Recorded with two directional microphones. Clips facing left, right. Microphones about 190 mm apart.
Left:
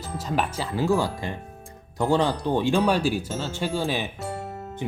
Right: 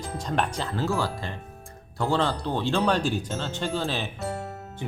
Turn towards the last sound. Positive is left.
turn(degrees=15)  # may be behind; listen again after turning